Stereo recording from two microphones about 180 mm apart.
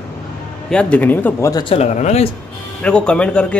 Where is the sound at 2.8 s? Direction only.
5° left (ahead or behind).